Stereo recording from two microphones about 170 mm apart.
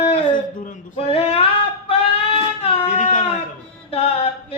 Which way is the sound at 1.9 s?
35° left (ahead or behind).